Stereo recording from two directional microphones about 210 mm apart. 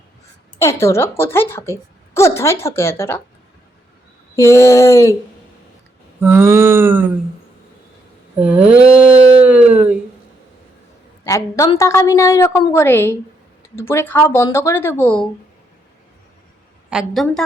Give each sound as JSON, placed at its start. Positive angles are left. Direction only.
{"t": 0.6, "sound": "speech", "side_deg": 15}
{"t": 4.4, "sound": "speech", "side_deg": 15}
{"t": 6.1, "sound": "mantra", "side_deg": -10}
{"t": 8.4, "sound": "a sound", "side_deg": -5}
{"t": 9.1, "sound": "mantra", "side_deg": -5}
{"t": 11.2, "sound": "speech", "side_deg": 15}
{"t": 16.9, "sound": "a sound", "side_deg": 0}